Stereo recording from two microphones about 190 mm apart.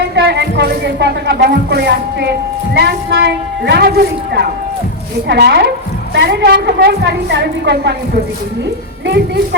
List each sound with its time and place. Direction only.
0.2 s speech: 65° right (ahead or behind)
9.0 s speech: 65° right (ahead or behind)